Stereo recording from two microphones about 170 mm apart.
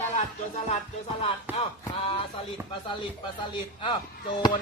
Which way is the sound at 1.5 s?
10° right (ahead or behind).